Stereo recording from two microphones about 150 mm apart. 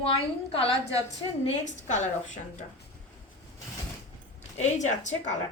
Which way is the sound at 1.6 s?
55° left (ahead or behind).